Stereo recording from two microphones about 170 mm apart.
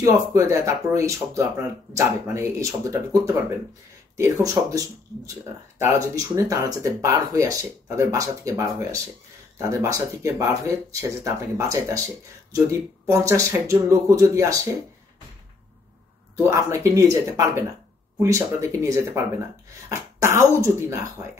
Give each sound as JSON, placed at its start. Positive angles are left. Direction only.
{"t": 0.0, "sound": "speech", "side_deg": -15}
{"t": 4.2, "sound": "speech", "side_deg": -20}
{"t": 13.0, "sound": "speech", "side_deg": -15}
{"t": 16.4, "sound": "speech", "side_deg": -15}